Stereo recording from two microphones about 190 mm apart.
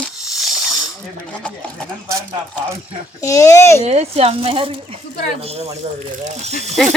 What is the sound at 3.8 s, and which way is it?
Speech, 35° right (ahead or behind).